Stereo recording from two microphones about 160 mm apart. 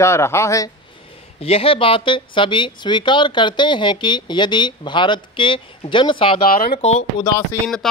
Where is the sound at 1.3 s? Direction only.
35° left (ahead or behind).